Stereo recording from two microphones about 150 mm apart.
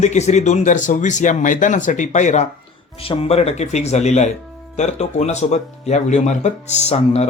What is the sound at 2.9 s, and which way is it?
Speech, 40° left (ahead or behind).